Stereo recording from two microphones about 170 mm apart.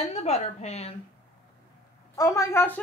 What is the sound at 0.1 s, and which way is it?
Speech, 40° left (ahead or behind).